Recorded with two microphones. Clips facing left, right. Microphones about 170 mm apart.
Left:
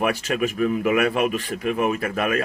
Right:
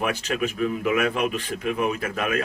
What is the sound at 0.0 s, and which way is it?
Speech, 5° left (ahead or behind).